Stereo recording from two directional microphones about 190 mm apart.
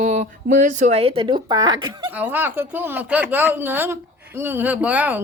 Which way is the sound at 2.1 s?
10° right (ahead or behind).